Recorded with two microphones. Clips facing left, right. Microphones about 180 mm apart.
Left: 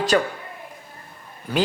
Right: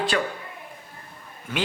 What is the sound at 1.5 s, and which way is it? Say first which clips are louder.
Speech: left 6 dB; 35° left (ahead or behind).